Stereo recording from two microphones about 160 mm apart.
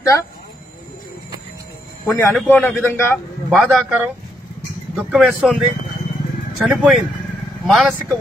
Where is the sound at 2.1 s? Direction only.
10° left (ahead or behind).